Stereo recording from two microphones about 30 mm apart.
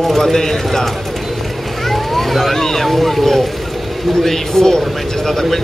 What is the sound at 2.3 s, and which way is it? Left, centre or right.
A man's voice, centre.